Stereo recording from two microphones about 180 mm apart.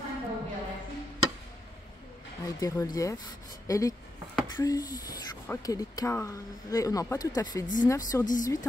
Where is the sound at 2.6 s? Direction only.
20° left (ahead or behind).